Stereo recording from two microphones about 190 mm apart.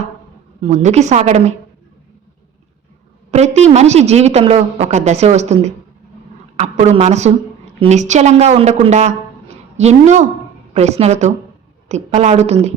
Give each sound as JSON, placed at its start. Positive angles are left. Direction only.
{"t": 0.6, "sound": "a woman's voice", "side_deg": -40}
{"t": 3.3, "sound": "a woman's voice", "side_deg": -35}